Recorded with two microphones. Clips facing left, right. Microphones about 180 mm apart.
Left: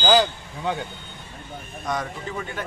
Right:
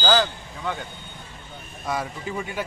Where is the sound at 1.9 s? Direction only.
5° right (ahead or behind).